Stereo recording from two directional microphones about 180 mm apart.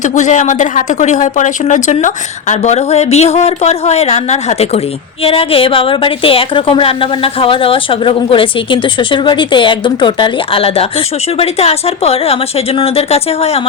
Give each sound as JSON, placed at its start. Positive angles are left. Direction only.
{"t": 0.0, "sound": "a woman's voice", "side_deg": 45}